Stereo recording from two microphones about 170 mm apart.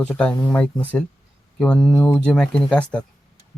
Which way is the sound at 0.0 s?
5° left (ahead or behind).